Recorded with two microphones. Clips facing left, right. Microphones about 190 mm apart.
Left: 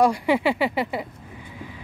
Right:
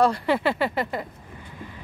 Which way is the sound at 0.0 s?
10° left (ahead or behind).